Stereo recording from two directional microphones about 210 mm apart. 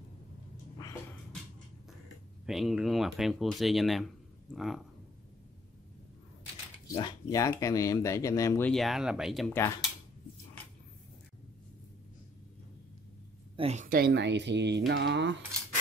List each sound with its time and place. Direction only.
2.4 s speech: centre (ahead or behind)
7.0 s speech: 20° left (ahead or behind); by 9.6 s centre (ahead or behind)
13.6 s speech: 30° right (ahead or behind); by 15.3 s 55° right (ahead or behind)